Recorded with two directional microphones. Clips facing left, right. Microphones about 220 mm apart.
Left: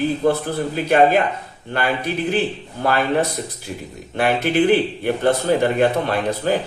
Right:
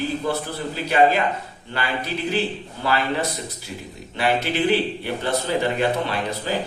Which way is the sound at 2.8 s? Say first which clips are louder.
Left 5 dB; 50° left (ahead or behind).